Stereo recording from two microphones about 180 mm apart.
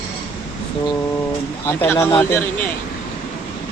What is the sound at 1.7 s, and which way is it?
Speech, 15° left (ahead or behind).